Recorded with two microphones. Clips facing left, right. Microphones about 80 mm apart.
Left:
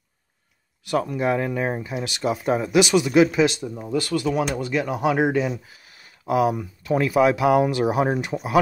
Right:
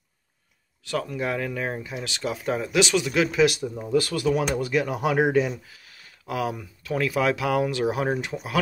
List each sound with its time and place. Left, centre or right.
0.9 s speech: left; by 4.6 s centre
4.6 s speech: centre
5.0 s speech: centre
5.7 s speech: left